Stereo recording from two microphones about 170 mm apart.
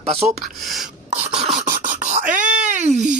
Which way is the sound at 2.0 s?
45° right (ahead or behind).